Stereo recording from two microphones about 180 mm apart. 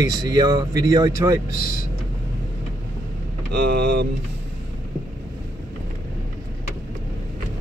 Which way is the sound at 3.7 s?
60° right (ahead or behind).